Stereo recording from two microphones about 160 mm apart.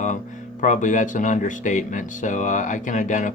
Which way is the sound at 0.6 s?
50° left (ahead or behind).